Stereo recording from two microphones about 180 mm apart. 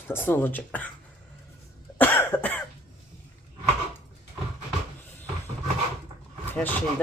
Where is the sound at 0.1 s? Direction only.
10° left (ahead or behind).